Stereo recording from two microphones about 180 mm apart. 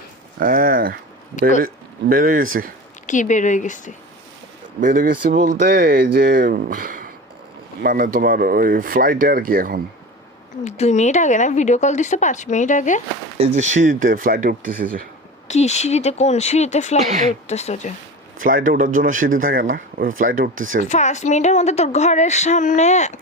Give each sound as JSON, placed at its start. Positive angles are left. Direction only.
{"t": 0.3, "sound": "speech", "side_deg": -50}
{"t": 3.1, "sound": "a woman's voice", "side_deg": 45}
{"t": 4.8, "sound": "speech", "side_deg": -50}
{"t": 10.6, "sound": "speech", "side_deg": 40}
{"t": 13.4, "sound": "speech", "side_deg": -40}
{"t": 15.4, "sound": "speech", "side_deg": 40}
{"t": 18.3, "sound": "speech", "side_deg": -50}
{"t": 20.8, "sound": "speech", "side_deg": 40}